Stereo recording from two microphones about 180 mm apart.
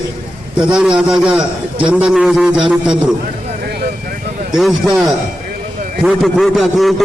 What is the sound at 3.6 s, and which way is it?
Vehicle, 65° right (ahead or behind).